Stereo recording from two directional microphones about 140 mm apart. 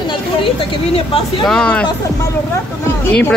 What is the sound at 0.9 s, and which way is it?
Speech, 45° left (ahead or behind).